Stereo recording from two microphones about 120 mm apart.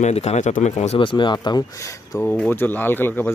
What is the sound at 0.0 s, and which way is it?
Speech, 65° left (ahead or behind).